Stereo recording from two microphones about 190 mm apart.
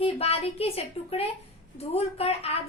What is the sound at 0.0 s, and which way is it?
A woman's voice, 30° left (ahead or behind).